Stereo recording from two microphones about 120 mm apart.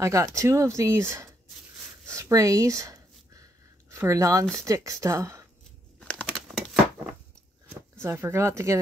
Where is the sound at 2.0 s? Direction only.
25° right (ahead or behind).